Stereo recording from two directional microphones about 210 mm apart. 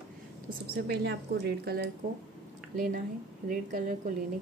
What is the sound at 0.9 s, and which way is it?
Speech, 50° right (ahead or behind).